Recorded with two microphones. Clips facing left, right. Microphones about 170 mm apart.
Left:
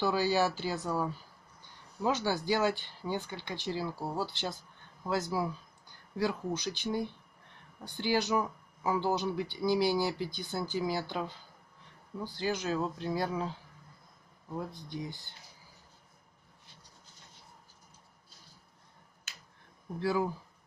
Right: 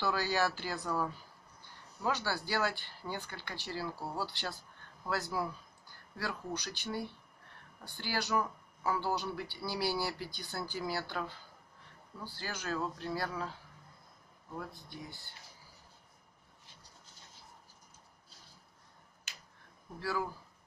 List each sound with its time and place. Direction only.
0.0 s speech: 10° left (ahead or behind)
12.4 s speech: 20° left (ahead or behind)
14.7 s speech: 5° right (ahead or behind)
20.0 s speech: 20° left (ahead or behind)